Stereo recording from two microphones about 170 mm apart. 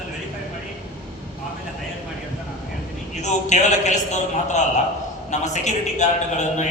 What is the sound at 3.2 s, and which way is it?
A man's voice, 45° left (ahead or behind).